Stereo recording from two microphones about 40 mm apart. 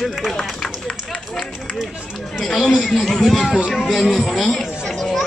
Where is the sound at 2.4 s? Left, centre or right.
Centre.